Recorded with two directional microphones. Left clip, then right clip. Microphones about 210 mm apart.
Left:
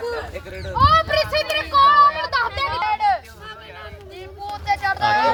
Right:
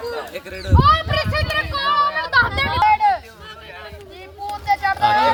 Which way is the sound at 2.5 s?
40° left (ahead or behind).